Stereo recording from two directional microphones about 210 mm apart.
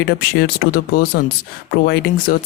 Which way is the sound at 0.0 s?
50° left (ahead or behind).